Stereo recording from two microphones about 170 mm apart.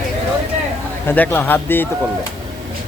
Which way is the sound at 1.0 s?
10° left (ahead or behind).